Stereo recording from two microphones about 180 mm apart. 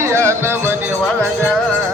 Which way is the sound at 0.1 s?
15° right (ahead or behind).